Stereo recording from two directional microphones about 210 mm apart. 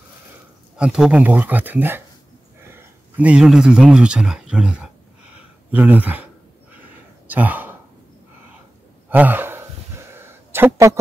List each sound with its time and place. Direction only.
0.7 s speech: 5° right (ahead or behind)
3.2 s speech: 5° right (ahead or behind)
6.7 s a sound: 10° right (ahead or behind)
9.1 s gasp: 10° right (ahead or behind)